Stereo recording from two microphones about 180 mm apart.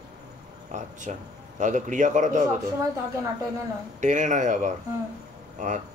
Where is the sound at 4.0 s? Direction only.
45° right (ahead or behind).